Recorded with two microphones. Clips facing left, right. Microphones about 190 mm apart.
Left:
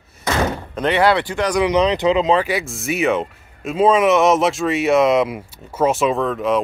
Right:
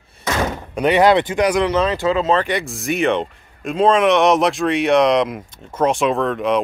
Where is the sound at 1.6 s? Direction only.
15° left (ahead or behind).